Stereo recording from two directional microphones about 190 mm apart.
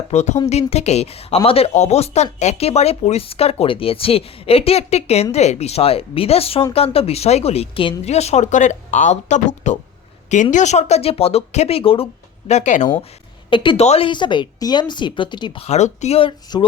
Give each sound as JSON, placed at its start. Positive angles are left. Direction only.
{"t": 0.1, "sound": "speech", "side_deg": 35}
{"t": 13.5, "sound": "a woman's voice", "side_deg": 25}